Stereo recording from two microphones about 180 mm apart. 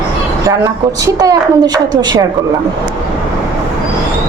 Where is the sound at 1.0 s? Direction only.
20° right (ahead or behind).